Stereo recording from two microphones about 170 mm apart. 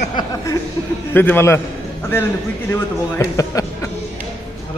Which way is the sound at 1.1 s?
10° left (ahead or behind).